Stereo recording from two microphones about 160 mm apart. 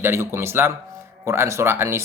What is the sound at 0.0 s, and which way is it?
Speech, 15° right (ahead or behind).